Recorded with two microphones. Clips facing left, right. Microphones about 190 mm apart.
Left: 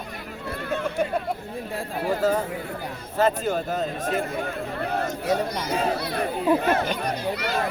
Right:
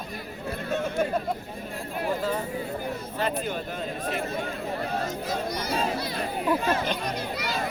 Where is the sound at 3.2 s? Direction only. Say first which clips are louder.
Left 8 dB; 45° left (ahead or behind).